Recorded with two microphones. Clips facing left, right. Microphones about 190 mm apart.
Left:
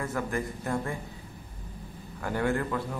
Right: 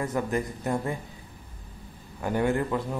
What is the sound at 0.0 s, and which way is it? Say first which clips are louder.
Speech: right 3 dB; 20° right (ahead or behind).